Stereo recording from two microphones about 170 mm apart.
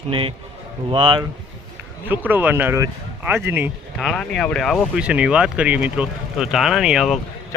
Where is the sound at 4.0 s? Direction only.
Centre (ahead or behind).